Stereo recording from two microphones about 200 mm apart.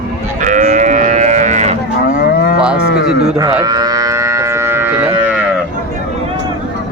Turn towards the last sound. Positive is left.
turn(degrees=-10)  # may be behind; listen again after turning